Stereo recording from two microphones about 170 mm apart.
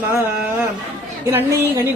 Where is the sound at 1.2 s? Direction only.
15° right (ahead or behind).